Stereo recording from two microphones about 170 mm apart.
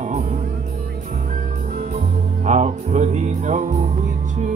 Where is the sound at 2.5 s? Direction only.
45° right (ahead or behind).